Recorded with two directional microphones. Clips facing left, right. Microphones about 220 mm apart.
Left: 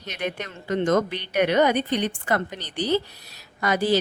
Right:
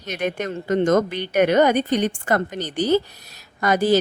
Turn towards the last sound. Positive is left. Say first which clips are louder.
# right 4 dB
turn(degrees=-45)  # may be behind; listen again after turning